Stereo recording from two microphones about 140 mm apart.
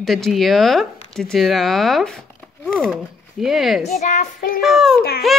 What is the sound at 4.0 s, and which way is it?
Speech, 60° left (ahead or behind).